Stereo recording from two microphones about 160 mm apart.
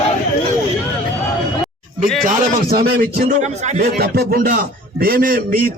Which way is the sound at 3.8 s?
75° right (ahead or behind).